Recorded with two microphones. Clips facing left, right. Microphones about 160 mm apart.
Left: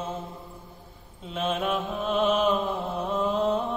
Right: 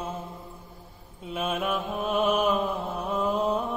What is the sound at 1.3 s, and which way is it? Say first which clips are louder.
Mantra: left 1 dB; 10° right (ahead or behind).